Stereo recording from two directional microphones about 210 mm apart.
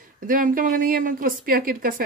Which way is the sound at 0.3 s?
40° right (ahead or behind).